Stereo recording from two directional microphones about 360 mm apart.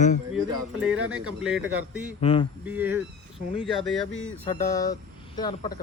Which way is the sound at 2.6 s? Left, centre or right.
Centre.